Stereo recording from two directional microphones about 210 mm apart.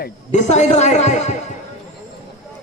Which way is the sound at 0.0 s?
35° left (ahead or behind).